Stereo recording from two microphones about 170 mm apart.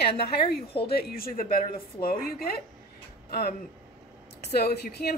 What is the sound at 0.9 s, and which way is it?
A woman's voice, 65° left (ahead or behind).